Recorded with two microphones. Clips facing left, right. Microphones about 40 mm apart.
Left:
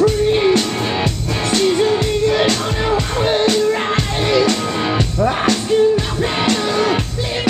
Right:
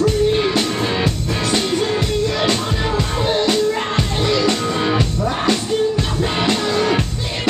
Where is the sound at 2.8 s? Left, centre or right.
Centre.